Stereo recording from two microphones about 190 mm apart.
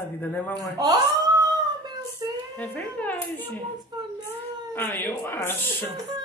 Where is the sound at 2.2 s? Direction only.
20° right (ahead or behind).